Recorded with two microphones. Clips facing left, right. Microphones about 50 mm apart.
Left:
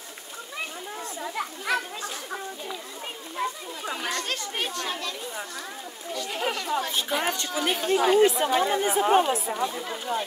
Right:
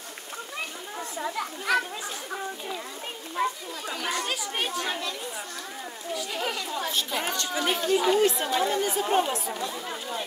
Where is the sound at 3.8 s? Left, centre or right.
Centre.